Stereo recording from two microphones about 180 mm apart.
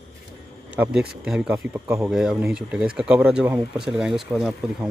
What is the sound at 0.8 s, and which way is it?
Speech, 10° right (ahead or behind).